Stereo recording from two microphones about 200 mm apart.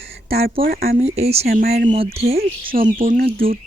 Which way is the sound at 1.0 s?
30° right (ahead or behind).